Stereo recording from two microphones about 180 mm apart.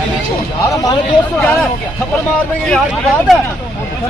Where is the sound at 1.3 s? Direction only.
10° left (ahead or behind).